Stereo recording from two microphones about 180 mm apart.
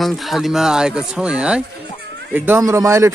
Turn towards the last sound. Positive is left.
turn(degrees=-15)  # may be behind; listen again after turning